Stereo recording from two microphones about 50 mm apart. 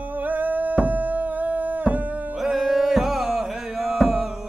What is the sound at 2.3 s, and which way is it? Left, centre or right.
Music, centre.